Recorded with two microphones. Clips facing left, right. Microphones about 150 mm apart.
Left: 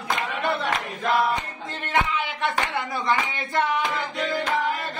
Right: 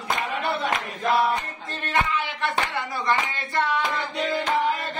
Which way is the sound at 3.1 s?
15° left (ahead or behind).